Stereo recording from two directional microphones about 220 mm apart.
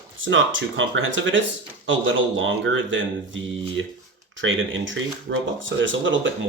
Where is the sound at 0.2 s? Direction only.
60° right (ahead or behind).